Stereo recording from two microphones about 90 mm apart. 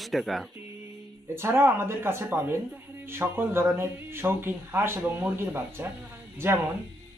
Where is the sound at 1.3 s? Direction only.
25° right (ahead or behind).